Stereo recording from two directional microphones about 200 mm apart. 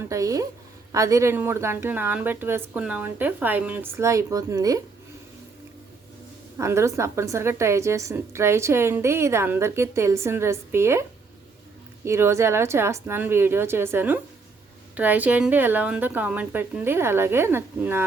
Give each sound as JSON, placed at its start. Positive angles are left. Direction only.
{"t": 0.0, "sound": "a woman's voice", "side_deg": -15}
{"t": 6.6, "sound": "a woman's voice", "side_deg": -15}
{"t": 12.0, "sound": "a woman's voice", "side_deg": -15}